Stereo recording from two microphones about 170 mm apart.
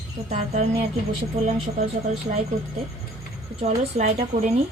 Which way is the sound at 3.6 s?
40° right (ahead or behind).